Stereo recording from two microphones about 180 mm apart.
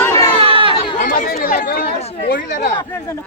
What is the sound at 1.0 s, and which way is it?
Chatter, 55° left (ahead or behind).